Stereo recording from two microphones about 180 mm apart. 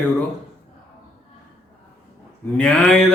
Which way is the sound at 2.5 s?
5° left (ahead or behind).